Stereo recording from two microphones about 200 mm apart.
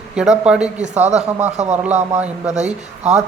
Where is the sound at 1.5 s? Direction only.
35° right (ahead or behind).